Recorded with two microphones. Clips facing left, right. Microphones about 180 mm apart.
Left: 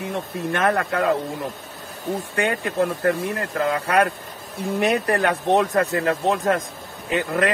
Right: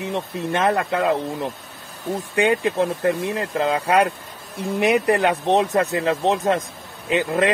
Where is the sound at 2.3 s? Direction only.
15° right (ahead or behind).